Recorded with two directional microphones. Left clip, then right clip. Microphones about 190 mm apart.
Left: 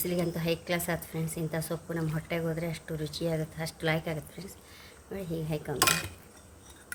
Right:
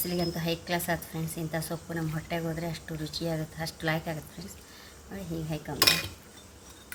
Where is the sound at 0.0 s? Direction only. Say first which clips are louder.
Even; 45° left (ahead or behind).